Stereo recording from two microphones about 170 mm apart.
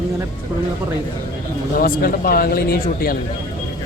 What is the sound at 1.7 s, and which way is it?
Speech, 60° left (ahead or behind).